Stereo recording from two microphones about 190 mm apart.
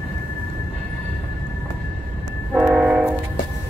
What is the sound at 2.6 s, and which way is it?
Train, 5° right (ahead or behind).